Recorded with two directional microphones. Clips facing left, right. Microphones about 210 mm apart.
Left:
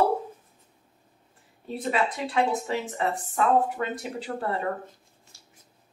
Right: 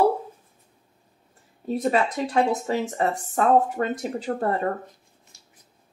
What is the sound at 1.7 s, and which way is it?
A woman's voice, 40° right (ahead or behind).